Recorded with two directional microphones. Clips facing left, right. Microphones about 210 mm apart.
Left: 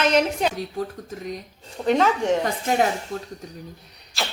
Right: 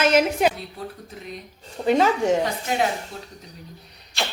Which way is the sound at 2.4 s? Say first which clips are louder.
Left 2 dB; 45° left (ahead or behind).